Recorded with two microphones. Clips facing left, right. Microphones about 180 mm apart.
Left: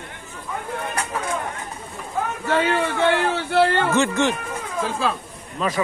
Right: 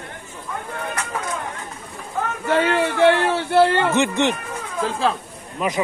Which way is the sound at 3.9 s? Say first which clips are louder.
Right 1 dB; 20° right (ahead or behind).